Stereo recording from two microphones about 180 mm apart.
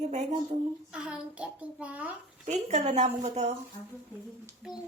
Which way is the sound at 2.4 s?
40° right (ahead or behind).